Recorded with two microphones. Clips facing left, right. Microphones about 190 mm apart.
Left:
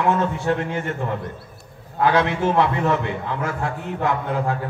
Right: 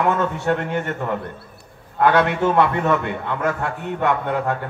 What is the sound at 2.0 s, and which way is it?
A man's voice, 60° right (ahead or behind).